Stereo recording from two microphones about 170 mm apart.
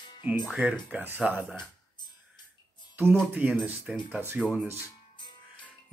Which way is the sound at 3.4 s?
10° right (ahead or behind).